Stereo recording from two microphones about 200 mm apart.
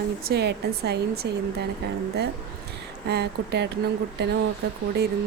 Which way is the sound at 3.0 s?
55° right (ahead or behind).